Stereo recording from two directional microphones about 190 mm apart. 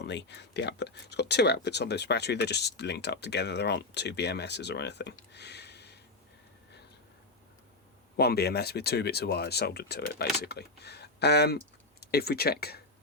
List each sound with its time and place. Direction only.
0.0 s speech: 65° left (ahead or behind)
8.1 s speech: 55° left (ahead or behind)